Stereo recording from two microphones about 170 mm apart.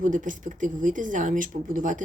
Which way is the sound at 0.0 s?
50° right (ahead or behind).